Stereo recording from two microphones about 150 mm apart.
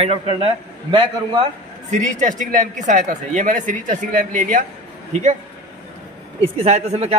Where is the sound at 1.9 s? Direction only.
55° right (ahead or behind).